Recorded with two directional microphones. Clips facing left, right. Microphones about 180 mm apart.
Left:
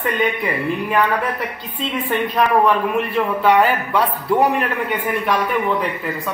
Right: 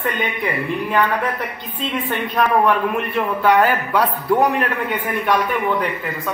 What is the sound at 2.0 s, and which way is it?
A man's voice, centre (ahead or behind).